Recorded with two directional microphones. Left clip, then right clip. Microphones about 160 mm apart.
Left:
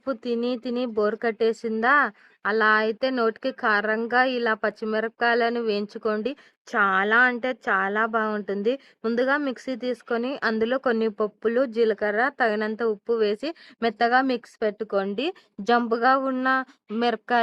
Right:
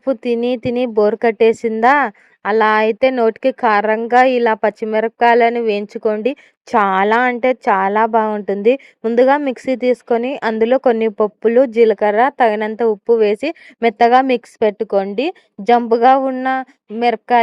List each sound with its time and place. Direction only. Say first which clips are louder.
0.0 s speech: right 10 dB; 30° right (ahead or behind)